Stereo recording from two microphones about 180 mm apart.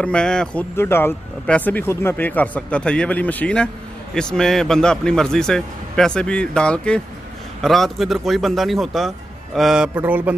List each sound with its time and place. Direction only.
0.0 s speech: 5° left (ahead or behind)